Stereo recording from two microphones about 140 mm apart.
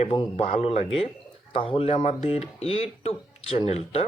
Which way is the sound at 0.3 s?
50° left (ahead or behind).